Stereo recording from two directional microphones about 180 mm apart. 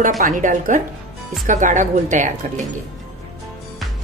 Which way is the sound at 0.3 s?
45° right (ahead or behind).